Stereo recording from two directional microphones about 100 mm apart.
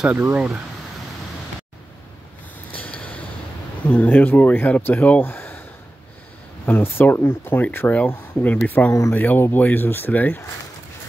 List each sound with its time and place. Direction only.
0.0 s speech: 15° right (ahead or behind)
2.7 s a sound: 15° left (ahead or behind)
3.9 s speech: 20° left (ahead or behind)
6.6 s speech: 20° left (ahead or behind)